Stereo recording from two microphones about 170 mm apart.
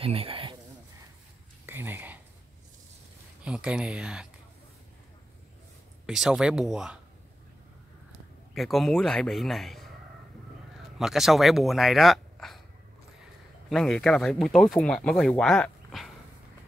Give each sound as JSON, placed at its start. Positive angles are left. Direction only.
{"t": 0.0, "sound": "speech", "side_deg": -35}
{"t": 1.7, "sound": "a sound", "side_deg": -10}
{"t": 3.4, "sound": "speech", "side_deg": -5}
{"t": 6.0, "sound": "speech", "side_deg": 0}
{"t": 8.5, "sound": "speech", "side_deg": 0}
{"t": 11.0, "sound": "speech", "side_deg": 0}
{"t": 13.7, "sound": "speech", "side_deg": 0}